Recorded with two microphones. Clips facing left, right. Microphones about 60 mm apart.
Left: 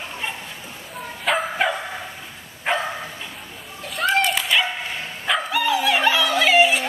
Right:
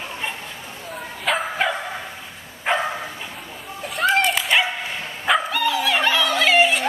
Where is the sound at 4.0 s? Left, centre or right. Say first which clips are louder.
Right 1 dB; centre.